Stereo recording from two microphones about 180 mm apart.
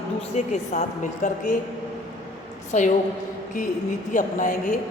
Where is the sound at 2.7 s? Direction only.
45° left (ahead or behind).